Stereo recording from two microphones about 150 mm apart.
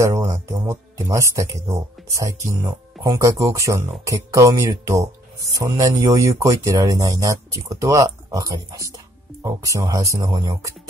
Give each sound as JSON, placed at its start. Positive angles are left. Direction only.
{"t": 0.0, "sound": "speech", "side_deg": -20}